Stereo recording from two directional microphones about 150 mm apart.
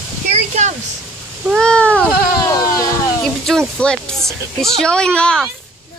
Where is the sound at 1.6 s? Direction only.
5° left (ahead or behind).